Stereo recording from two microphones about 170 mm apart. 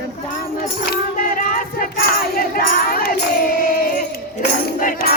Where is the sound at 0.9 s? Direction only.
55° left (ahead or behind).